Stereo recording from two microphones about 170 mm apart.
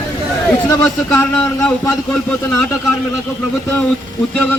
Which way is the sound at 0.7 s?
20° left (ahead or behind).